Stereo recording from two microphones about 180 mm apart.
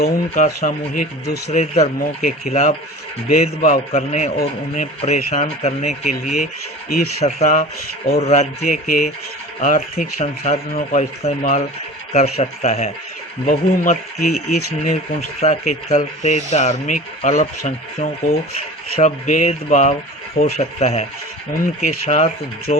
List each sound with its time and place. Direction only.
0.0 s speech: 50° left (ahead or behind)